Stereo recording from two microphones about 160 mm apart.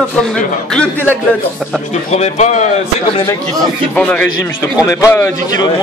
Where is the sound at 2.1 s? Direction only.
45° left (ahead or behind).